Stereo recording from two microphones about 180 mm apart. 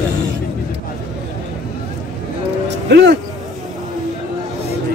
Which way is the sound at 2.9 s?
70° right (ahead or behind).